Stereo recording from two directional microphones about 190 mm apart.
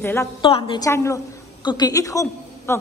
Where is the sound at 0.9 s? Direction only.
15° left (ahead or behind).